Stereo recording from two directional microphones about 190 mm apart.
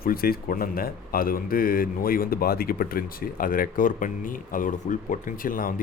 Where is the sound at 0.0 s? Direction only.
50° left (ahead or behind).